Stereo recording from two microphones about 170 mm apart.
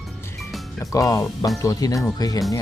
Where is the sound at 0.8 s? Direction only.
20° left (ahead or behind).